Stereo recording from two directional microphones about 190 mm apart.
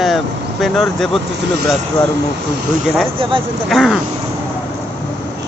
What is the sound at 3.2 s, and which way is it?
Speech, 25° right (ahead or behind).